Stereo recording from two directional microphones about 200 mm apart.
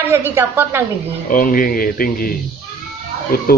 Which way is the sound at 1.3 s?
45° left (ahead or behind).